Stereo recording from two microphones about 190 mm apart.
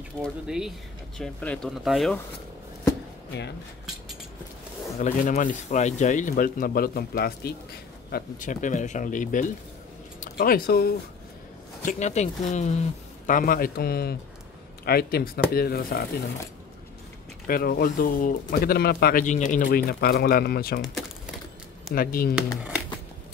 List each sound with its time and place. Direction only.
0.2 s speech: centre (ahead or behind)
4.9 s speech: 40° left (ahead or behind); by 7.5 s 55° left (ahead or behind)
8.1 s speech: 40° left (ahead or behind)
11.8 s speech: 40° left (ahead or behind)
13.3 s speech: 45° left (ahead or behind)
17.5 s speech: 50° left (ahead or behind)
20.8 s typewriter: centre (ahead or behind)
21.9 s speech: 50° left (ahead or behind)